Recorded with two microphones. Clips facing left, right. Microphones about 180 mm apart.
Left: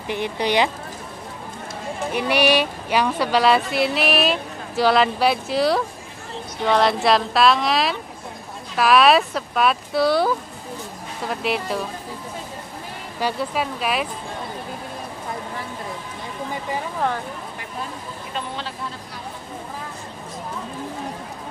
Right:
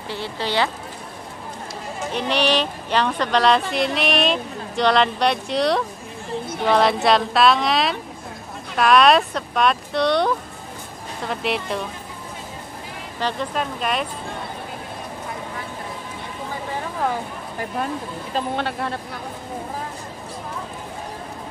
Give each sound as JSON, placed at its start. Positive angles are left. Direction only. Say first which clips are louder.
{"t": 0.1, "sound": "speech", "louder": "left 4 dB", "side_deg": 15}
{"t": 2.1, "sound": "speech", "louder": "left 2 dB", "side_deg": 10}
{"t": 13.2, "sound": "speech", "louder": "left 1 dB", "side_deg": 5}
{"t": 18.6, "sound": "speech", "louder": "right 6 dB", "side_deg": -65}